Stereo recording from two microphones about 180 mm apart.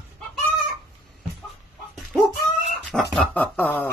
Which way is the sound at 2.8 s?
Centre (ahead or behind).